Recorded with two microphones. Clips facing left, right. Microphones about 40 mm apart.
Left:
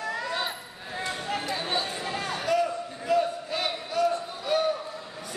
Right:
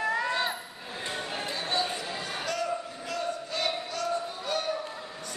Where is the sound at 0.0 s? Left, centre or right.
Right.